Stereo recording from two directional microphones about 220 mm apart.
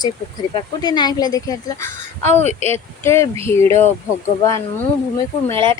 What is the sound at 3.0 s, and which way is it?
Speech, 10° left (ahead or behind).